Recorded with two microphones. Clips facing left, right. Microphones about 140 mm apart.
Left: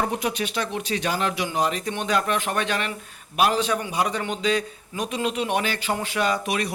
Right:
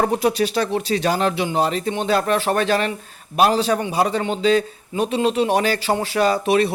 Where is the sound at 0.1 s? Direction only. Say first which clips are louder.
Right 8 dB; 35° right (ahead or behind).